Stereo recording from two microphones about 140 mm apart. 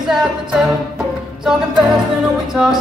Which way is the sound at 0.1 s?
5° right (ahead or behind).